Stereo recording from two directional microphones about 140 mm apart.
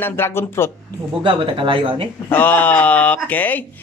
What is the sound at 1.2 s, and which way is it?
Speech, 40° right (ahead or behind).